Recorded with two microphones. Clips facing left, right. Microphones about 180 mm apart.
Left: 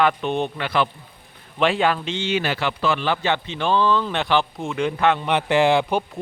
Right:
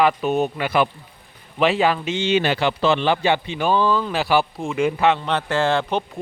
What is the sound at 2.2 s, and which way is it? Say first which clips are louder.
Speech: right 5 dB; 20° right (ahead or behind).